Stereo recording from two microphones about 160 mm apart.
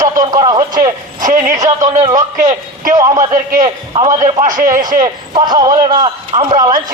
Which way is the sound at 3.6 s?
30° right (ahead or behind).